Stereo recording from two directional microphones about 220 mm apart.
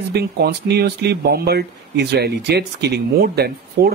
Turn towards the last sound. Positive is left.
turn(degrees=-45)  # may be behind; listen again after turning